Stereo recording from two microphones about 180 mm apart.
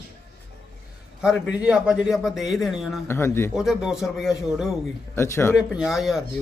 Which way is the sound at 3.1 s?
15° left (ahead or behind).